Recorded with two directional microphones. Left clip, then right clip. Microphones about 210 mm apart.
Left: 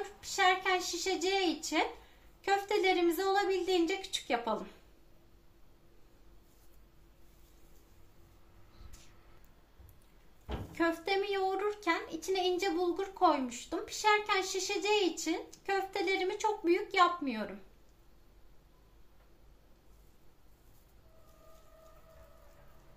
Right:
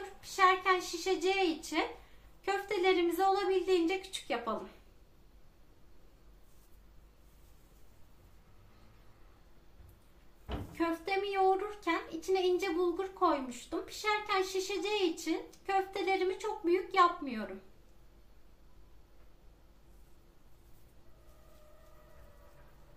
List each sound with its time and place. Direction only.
0.2 s a woman's voice: 30° left (ahead or behind)
10.7 s a child's voice: 35° left (ahead or behind)